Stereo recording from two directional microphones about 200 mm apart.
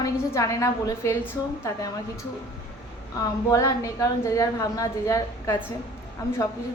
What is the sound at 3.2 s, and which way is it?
A woman's voice, 15° left (ahead or behind).